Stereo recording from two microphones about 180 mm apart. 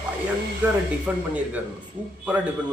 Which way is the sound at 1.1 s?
10° right (ahead or behind).